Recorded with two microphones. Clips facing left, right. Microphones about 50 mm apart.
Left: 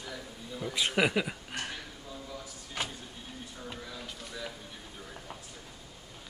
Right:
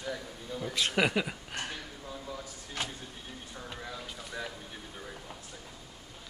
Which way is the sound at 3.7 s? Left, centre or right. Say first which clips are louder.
Right 1 dB; centre.